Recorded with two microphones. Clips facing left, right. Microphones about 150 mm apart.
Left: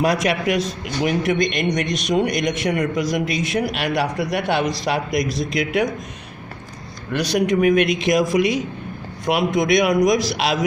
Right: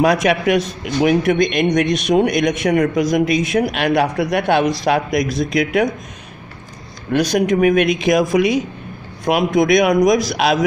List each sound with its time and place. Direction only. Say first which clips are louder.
0.0 s a man's voice: right 4 dB; 55° right (ahead or behind)
7.1 s a man's voice: right 4 dB; 45° right (ahead or behind)